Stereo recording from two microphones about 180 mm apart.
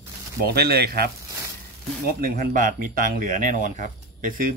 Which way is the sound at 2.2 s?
50° right (ahead or behind).